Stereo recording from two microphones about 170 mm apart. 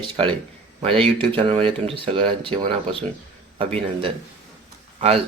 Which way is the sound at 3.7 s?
35° right (ahead or behind).